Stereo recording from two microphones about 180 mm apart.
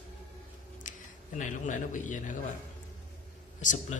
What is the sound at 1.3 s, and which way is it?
A man's voice, 45° left (ahead or behind).